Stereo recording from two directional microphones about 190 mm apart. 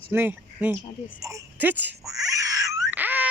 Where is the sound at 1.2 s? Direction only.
15° right (ahead or behind).